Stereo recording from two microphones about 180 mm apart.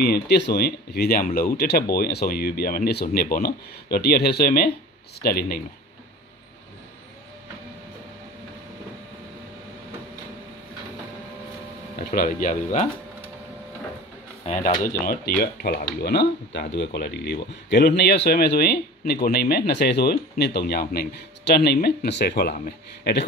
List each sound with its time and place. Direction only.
0.0 s speech: 65° left (ahead or behind)
12.0 s speech: 55° left (ahead or behind)
14.4 s speech: 40° left (ahead or behind)
15.0 s speech: 60° left (ahead or behind)